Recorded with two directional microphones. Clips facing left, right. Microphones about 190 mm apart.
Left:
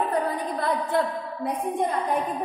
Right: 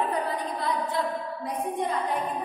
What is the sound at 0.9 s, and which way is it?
Choir, 55° left (ahead or behind).